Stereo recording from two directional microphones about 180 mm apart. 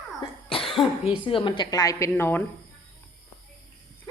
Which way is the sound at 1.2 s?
30° left (ahead or behind).